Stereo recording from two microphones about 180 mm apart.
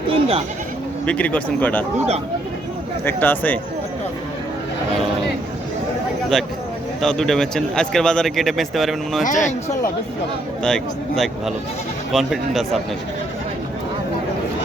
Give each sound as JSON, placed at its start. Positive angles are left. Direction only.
{"t": 0.1, "sound": "bleat", "side_deg": -30}
{"t": 1.0, "sound": "speech", "side_deg": 5}
{"t": 3.0, "sound": "speech", "side_deg": 10}
{"t": 6.3, "sound": "speech", "side_deg": 0}
{"t": 9.2, "sound": "speech", "side_deg": 45}
{"t": 10.6, "sound": "speech", "side_deg": 5}